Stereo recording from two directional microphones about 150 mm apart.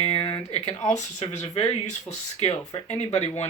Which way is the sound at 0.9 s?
50° left (ahead or behind).